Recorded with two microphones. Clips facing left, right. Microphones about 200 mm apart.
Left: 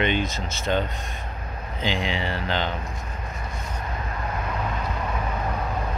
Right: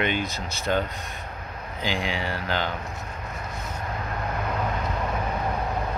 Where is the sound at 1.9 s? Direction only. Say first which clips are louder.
Left 1 dB; centre (ahead or behind).